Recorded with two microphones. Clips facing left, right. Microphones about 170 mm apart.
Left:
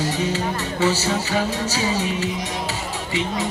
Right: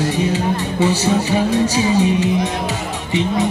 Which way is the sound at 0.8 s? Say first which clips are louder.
Right 4 dB; 15° right (ahead or behind).